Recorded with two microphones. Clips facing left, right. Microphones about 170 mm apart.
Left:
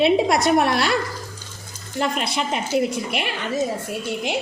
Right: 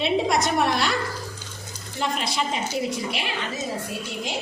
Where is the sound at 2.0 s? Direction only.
60° left (ahead or behind).